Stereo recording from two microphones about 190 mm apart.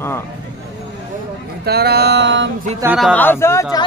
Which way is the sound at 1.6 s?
55° right (ahead or behind).